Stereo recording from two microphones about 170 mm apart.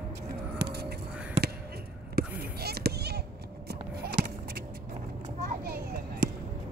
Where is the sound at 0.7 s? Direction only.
70° right (ahead or behind).